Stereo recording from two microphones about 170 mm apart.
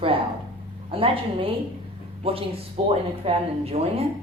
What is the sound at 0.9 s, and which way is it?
A woman's voice, 30° right (ahead or behind).